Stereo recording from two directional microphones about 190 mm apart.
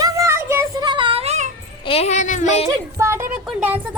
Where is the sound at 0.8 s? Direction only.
25° right (ahead or behind).